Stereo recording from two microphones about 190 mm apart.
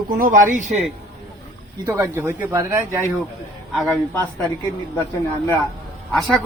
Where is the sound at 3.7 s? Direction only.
Centre (ahead or behind).